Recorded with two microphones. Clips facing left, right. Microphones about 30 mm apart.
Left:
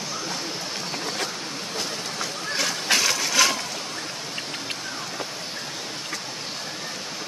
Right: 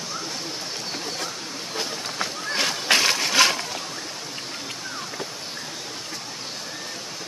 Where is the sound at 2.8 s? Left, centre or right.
Right.